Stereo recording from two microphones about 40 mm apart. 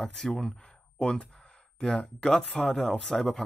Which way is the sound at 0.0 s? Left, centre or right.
Centre.